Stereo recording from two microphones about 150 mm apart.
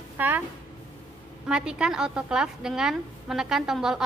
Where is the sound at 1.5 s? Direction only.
5° right (ahead or behind).